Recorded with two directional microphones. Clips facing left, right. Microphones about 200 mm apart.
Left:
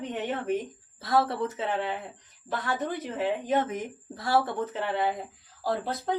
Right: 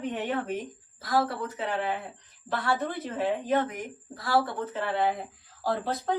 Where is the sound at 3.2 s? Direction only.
20° left (ahead or behind).